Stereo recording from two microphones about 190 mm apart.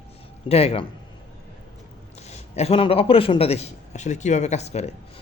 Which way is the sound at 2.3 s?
35° left (ahead or behind).